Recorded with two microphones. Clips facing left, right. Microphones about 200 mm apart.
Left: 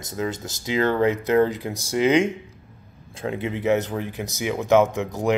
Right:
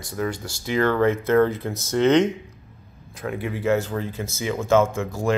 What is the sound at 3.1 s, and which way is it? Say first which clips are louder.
Speech: left 1 dB; 25° left (ahead or behind).